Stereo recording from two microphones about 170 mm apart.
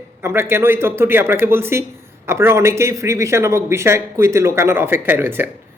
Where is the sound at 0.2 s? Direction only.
15° right (ahead or behind).